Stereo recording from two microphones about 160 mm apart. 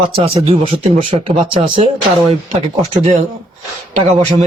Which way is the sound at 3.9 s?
45° right (ahead or behind).